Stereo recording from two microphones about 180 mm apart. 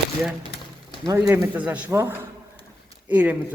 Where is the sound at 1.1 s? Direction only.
15° right (ahead or behind).